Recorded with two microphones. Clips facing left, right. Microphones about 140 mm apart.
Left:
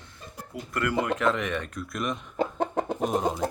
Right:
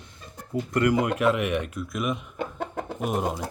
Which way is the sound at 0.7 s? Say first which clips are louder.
Right 4 dB; 20° right (ahead or behind).